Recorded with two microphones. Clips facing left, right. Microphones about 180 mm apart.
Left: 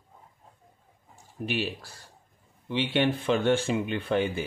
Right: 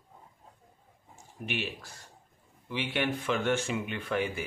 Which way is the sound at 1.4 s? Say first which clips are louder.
Left 5 dB; 35° left (ahead or behind).